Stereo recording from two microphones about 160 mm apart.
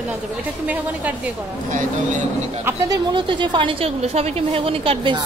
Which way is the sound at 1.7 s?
55° right (ahead or behind).